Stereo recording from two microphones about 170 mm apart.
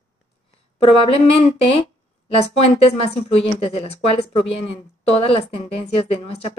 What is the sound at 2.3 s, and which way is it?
A woman's voice, 35° left (ahead or behind).